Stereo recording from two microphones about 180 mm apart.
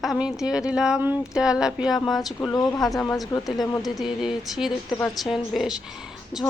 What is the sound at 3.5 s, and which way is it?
Speech, 20° left (ahead or behind).